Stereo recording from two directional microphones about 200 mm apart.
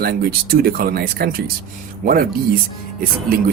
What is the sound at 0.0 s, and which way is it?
Speech, 50° right (ahead or behind).